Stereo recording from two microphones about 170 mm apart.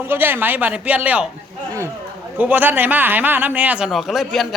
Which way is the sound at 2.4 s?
10° right (ahead or behind).